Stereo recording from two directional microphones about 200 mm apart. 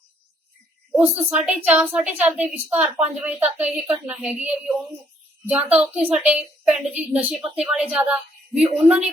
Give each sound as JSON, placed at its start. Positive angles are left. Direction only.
{"t": 0.9, "sound": "a woman's voice", "side_deg": -5}